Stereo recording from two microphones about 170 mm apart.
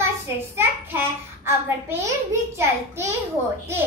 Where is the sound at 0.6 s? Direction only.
15° right (ahead or behind).